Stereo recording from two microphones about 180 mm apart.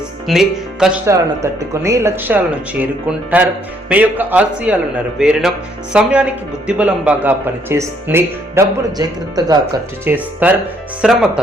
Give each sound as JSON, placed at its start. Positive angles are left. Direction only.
{"t": 0.3, "sound": "speech", "side_deg": 0}
{"t": 1.0, "sound": "speech", "side_deg": -15}